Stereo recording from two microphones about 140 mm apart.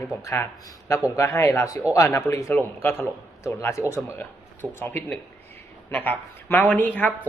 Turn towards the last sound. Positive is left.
turn(degrees=10)  # may be behind; listen again after turning